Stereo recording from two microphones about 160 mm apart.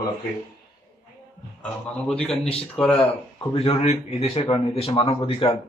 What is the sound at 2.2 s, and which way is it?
Speech, 40° left (ahead or behind).